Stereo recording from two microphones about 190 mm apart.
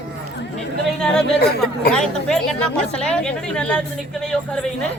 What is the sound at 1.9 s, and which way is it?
A man's voice, 5° left (ahead or behind).